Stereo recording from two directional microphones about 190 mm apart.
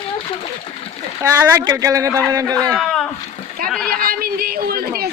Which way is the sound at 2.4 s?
5° left (ahead or behind).